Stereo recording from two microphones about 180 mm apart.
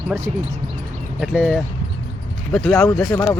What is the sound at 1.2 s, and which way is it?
Speech, centre (ahead or behind).